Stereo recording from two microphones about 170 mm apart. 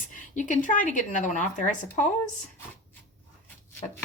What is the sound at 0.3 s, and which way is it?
Speech, 50° left (ahead or behind).